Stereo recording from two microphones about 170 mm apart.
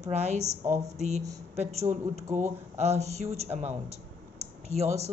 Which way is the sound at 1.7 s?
40° right (ahead or behind).